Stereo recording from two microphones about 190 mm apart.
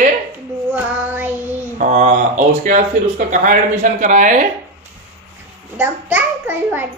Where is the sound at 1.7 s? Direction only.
40° right (ahead or behind).